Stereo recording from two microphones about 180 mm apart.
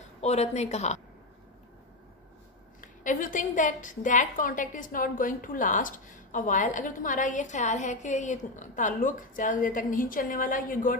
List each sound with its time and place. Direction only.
0.2 s a woman's voice: 35° left (ahead or behind)
2.8 s a woman's voice: 45° left (ahead or behind)